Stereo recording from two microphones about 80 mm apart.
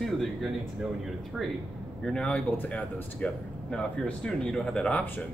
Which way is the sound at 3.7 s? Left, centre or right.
Centre.